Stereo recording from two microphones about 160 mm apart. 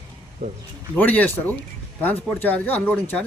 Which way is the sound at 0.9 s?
10° left (ahead or behind).